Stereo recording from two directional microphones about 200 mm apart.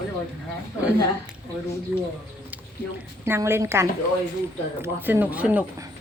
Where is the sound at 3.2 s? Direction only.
10° right (ahead or behind).